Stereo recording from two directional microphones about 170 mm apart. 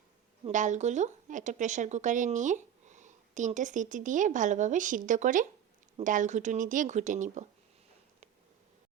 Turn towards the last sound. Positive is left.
turn(degrees=-45)  # may be behind; listen again after turning